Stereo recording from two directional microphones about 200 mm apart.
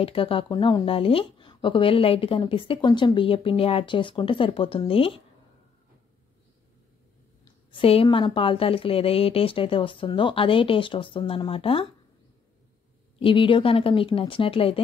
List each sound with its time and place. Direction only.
0.0 s a woman's voice: 25° left (ahead or behind)
7.7 s a woman's voice: 30° left (ahead or behind)
13.2 s a woman's voice: 25° left (ahead or behind)